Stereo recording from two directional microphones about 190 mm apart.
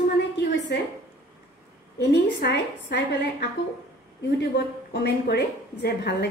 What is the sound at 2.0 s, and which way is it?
A woman's voice, 65° left (ahead or behind).